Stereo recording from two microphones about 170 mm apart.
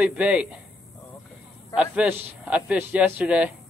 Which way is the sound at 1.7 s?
5° right (ahead or behind).